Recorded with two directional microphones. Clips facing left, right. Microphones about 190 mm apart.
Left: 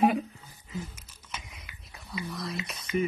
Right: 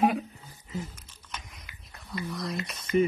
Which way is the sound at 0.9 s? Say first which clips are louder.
Even; 10° left (ahead or behind).